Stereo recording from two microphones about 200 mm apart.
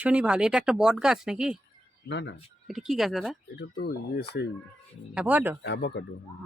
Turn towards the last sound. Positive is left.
turn(degrees=60)  # may be behind; listen again after turning